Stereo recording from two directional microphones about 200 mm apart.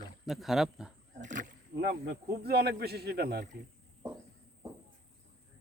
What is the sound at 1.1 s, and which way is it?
Speech, 40° right (ahead or behind).